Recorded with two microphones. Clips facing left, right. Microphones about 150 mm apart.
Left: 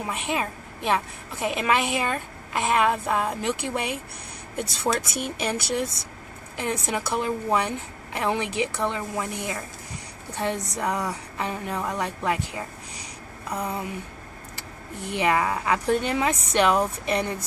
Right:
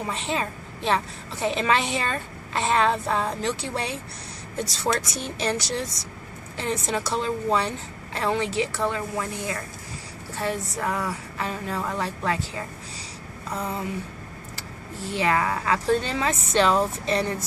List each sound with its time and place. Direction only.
0.0 s a woman's voice: 10° left (ahead or behind)
15.0 s a woman's voice: 20° left (ahead or behind)